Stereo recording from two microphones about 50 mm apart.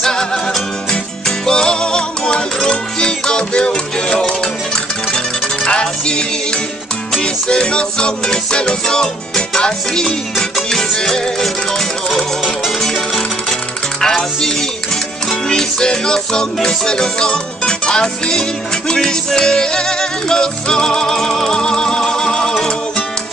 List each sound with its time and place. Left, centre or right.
0.0 s music: centre
1.4 s music: centre
12.8 s music: centre